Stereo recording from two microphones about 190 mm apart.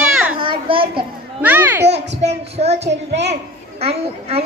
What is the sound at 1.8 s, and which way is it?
Speech, 65° right (ahead or behind).